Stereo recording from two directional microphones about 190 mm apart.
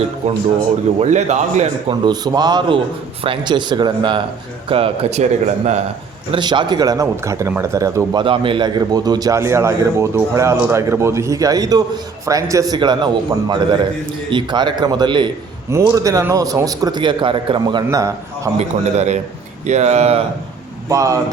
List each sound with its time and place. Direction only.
0.9 s a man's voice: 40° right (ahead or behind)
1.9 s a man's voice: 20° right (ahead or behind)
6.3 s a man's voice: 25° right (ahead or behind)
14.3 s a man's voice: 25° right (ahead or behind)
18.5 s a man's voice: 35° right (ahead or behind)
20.9 s speech: 15° right (ahead or behind)